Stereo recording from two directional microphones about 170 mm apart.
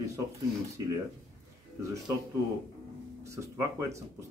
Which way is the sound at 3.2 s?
15° right (ahead or behind).